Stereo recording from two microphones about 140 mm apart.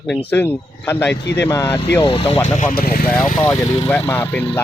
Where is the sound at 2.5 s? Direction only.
75° left (ahead or behind); by 3.3 s 90° left.